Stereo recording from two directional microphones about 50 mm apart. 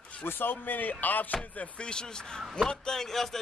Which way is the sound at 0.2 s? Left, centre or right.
Left.